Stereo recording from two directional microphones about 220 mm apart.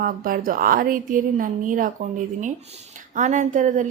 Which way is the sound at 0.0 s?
40° right (ahead or behind).